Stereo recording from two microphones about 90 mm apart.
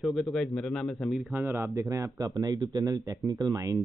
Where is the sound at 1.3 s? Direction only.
25° right (ahead or behind).